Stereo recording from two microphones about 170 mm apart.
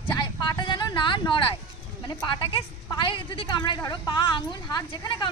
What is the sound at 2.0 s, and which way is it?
A woman's voice, 25° left (ahead or behind).